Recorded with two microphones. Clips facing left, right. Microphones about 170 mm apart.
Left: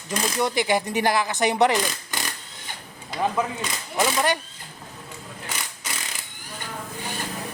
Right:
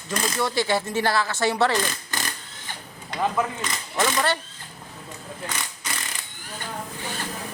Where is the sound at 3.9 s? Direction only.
10° left (ahead or behind).